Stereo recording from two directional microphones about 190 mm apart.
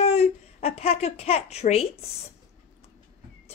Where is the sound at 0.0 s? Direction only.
35° left (ahead or behind).